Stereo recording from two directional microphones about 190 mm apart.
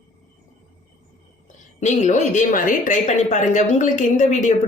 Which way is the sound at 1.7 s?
40° left (ahead or behind).